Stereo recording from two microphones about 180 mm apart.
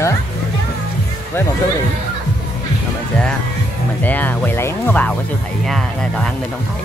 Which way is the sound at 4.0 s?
10° left (ahead or behind).